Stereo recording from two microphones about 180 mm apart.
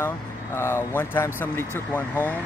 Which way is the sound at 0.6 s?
15° left (ahead or behind).